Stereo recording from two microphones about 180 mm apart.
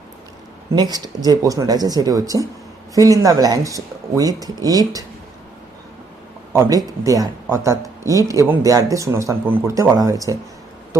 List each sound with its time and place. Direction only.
0.8 s speech: 20° right (ahead or behind)
6.5 s speech: 15° right (ahead or behind)